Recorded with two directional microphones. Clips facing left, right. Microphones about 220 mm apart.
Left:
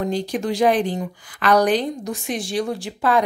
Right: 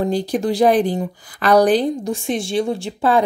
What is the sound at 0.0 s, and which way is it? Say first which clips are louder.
A woman's voice: right 4 dB; 35° right (ahead or behind).